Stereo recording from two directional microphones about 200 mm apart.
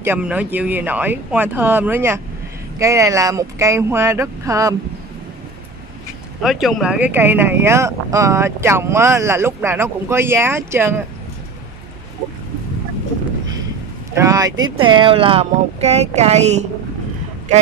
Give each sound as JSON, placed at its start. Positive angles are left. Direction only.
{"t": 0.0, "sound": "speech", "side_deg": -10}
{"t": 6.4, "sound": "speech", "side_deg": 0}
{"t": 14.1, "sound": "speech", "side_deg": -15}